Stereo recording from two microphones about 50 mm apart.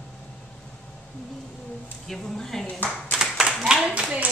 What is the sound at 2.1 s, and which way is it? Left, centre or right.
Speech, centre.